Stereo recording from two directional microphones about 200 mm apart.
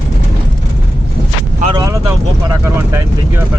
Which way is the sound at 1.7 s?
15° right (ahead or behind).